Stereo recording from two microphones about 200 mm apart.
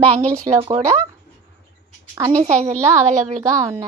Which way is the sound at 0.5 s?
15° right (ahead or behind).